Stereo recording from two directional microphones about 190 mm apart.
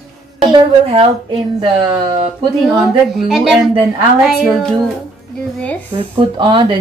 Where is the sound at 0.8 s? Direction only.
30° right (ahead or behind).